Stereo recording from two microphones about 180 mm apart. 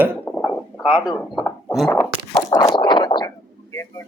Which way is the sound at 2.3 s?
20° left (ahead or behind).